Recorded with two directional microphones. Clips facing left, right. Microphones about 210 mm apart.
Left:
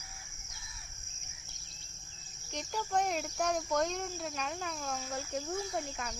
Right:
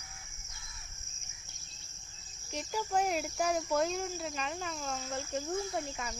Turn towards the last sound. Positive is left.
turn(degrees=0)  # may be behind; listen again after turning